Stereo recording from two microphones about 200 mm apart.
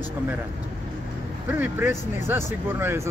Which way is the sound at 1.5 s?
10° right (ahead or behind).